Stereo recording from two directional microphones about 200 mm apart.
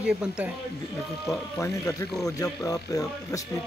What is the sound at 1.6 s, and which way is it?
Speech, 15° left (ahead or behind).